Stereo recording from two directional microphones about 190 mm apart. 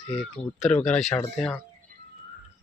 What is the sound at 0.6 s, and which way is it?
Speech, 5° left (ahead or behind).